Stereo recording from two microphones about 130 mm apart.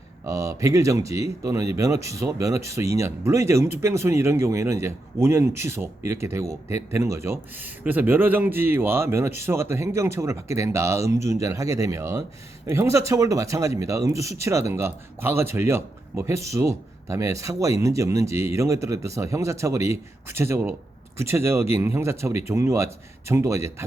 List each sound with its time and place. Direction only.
0.3 s speech: 25° right (ahead or behind)